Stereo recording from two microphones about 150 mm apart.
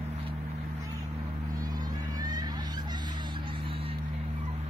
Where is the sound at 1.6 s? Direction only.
25° right (ahead or behind).